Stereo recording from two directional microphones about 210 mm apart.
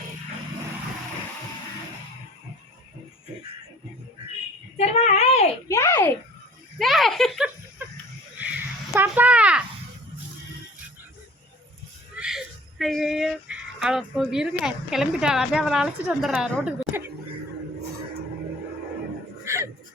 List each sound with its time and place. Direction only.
4.8 s speech: 30° left (ahead or behind)
5.6 s a child's voice: 15° left (ahead or behind)
6.7 s speech: centre (ahead or behind)
9.0 s speech: 5° right (ahead or behind)
12.1 s speech: 5° right (ahead or behind)
19.5 s a sound: 15° right (ahead or behind)